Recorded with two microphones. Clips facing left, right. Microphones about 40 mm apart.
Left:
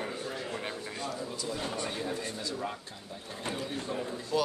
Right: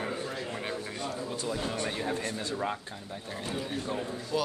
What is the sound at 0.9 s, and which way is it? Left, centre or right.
Speech, right.